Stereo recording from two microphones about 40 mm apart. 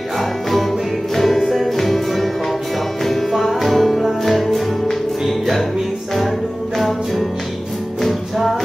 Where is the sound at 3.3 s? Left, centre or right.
Centre.